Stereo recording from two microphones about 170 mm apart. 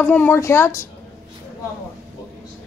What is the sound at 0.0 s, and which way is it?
Speech, 10° left (ahead or behind).